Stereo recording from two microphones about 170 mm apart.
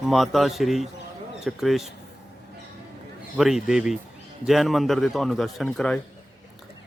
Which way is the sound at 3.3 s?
Centre (ahead or behind).